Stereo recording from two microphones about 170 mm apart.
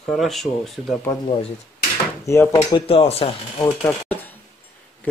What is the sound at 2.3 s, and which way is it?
Speech, 15° left (ahead or behind).